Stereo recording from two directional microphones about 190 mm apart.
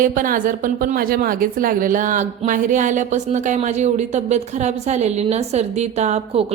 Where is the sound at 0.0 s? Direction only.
45° right (ahead or behind).